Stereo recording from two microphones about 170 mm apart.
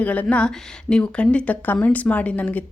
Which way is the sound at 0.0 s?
10° left (ahead or behind).